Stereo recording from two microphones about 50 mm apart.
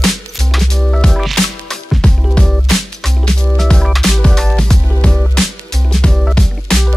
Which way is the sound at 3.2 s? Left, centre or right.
Centre.